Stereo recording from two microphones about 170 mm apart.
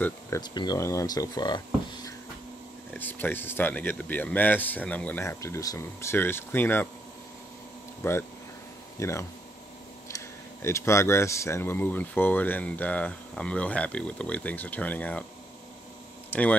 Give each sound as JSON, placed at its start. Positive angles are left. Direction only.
{"t": 0.4, "sound": "speech", "side_deg": 25}
{"t": 2.9, "sound": "speech", "side_deg": 10}
{"t": 8.0, "sound": "speech", "side_deg": 15}
{"t": 16.3, "sound": "a sound", "side_deg": 10}